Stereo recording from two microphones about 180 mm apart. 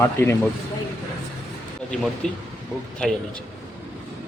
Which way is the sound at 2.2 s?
5° left (ahead or behind).